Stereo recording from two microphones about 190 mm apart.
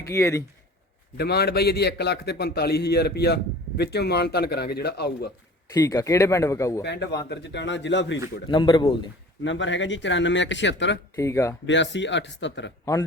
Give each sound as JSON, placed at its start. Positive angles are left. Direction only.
{"t": 0.0, "sound": "speech", "side_deg": 15}
{"t": 1.1, "sound": "a man's voice", "side_deg": 60}
{"t": 5.7, "sound": "speech", "side_deg": 20}
{"t": 6.8, "sound": "a man's voice", "side_deg": 65}
{"t": 8.4, "sound": "speech", "side_deg": 25}
{"t": 9.4, "sound": "speech", "side_deg": 75}
{"t": 11.2, "sound": "speech", "side_deg": 15}
{"t": 11.6, "sound": "speech", "side_deg": 70}
{"t": 12.8, "sound": "a man's voice", "side_deg": 15}